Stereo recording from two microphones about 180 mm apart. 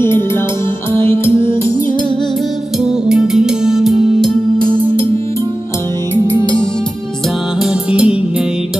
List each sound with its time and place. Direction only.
1.3 s music: 30° right (ahead or behind)
3.1 s music: 5° right (ahead or behind)
7.6 s music: 5° right (ahead or behind)